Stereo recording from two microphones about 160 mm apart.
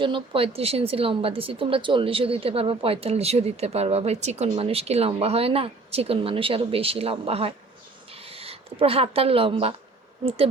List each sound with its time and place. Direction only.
0.0 s a woman's voice: 35° right (ahead or behind)